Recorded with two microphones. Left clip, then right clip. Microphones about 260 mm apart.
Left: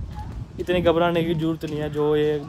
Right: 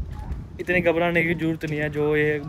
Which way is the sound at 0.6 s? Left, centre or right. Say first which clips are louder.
Left 1 dB; centre.